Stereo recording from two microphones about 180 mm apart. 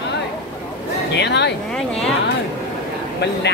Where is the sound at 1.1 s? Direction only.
70° left (ahead or behind).